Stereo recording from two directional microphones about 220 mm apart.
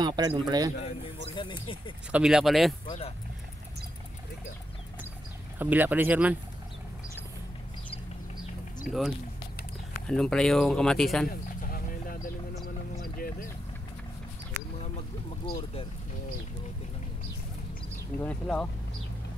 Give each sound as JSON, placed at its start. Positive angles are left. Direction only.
{"t": 0.0, "sound": "a man's voice", "side_deg": -20}
{"t": 0.7, "sound": "speech", "side_deg": 25}
{"t": 2.1, "sound": "speech", "side_deg": -5}
{"t": 5.6, "sound": "a man's voice", "side_deg": -10}
{"t": 8.8, "sound": "speech", "side_deg": 0}
{"t": 11.2, "sound": "a sound", "side_deg": 40}
{"t": 14.8, "sound": "vehicle", "side_deg": 30}
{"t": 18.2, "sound": "speech", "side_deg": 5}